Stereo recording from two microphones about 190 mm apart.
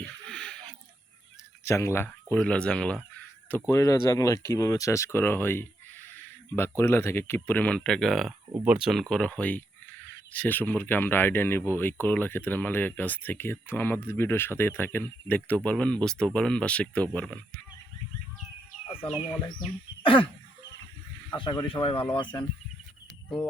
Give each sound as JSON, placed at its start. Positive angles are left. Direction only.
{"t": 0.0, "sound": "a sound", "side_deg": 5}
{"t": 1.6, "sound": "speech", "side_deg": 15}
{"t": 20.0, "sound": "cough", "side_deg": 25}
{"t": 21.3, "sound": "speech", "side_deg": 25}